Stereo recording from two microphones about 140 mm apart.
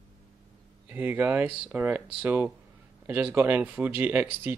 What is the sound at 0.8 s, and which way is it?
Speech, 10° right (ahead or behind).